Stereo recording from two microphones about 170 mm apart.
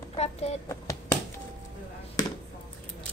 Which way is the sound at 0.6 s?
20° left (ahead or behind).